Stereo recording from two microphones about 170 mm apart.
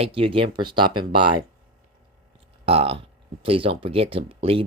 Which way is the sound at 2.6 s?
35° right (ahead or behind).